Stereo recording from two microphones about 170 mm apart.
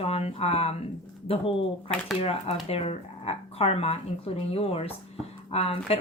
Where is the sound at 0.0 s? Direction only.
35° left (ahead or behind).